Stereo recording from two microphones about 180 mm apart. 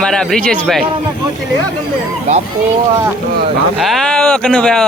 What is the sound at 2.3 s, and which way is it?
Speech, 40° right (ahead or behind).